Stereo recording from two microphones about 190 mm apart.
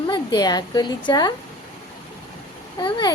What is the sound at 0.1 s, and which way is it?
A woman's voice, 25° left (ahead or behind).